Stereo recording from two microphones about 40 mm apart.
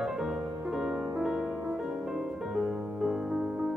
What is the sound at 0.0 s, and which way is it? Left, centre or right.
Music, centre.